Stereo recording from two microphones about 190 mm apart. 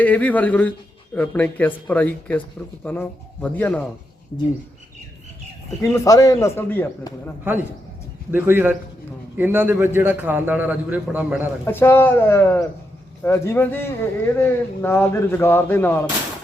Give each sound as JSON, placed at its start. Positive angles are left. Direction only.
{"t": 0.0, "sound": "speech", "side_deg": 10}
{"t": 4.3, "sound": "speech", "side_deg": 25}
{"t": 5.8, "sound": "speech", "side_deg": 15}
{"t": 8.3, "sound": "a man's voice", "side_deg": -10}
{"t": 11.6, "sound": "speech", "side_deg": 10}